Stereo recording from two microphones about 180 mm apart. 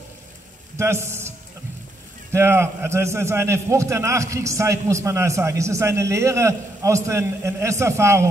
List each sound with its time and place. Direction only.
0.7 s a man's voice: 15° right (ahead or behind)
2.3 s a man's voice: 15° right (ahead or behind)